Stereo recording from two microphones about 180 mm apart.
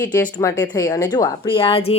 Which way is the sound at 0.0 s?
10° left (ahead or behind).